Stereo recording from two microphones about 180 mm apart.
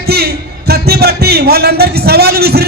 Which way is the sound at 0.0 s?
60° right (ahead or behind).